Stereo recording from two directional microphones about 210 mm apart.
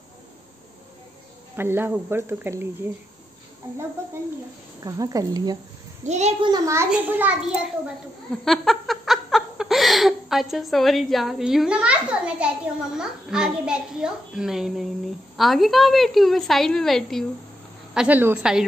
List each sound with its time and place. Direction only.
1.6 s speech: 10° right (ahead or behind)
4.7 s speech: 15° right (ahead or behind)
6.0 s a child's voice: 30° right (ahead or behind)
6.5 s speech: 15° right (ahead or behind)
8.5 s laughter: centre (ahead or behind)
12.9 s a child's voice: 5° right (ahead or behind)